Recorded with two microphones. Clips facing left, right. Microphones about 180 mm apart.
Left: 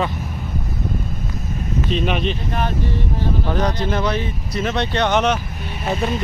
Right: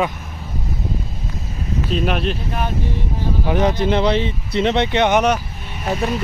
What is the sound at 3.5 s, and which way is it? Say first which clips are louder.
Speech: right 6 dB; 20° right (ahead or behind).